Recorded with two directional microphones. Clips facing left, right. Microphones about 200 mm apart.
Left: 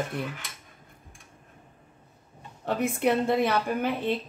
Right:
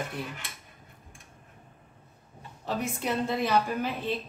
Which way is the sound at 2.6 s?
60° left (ahead or behind).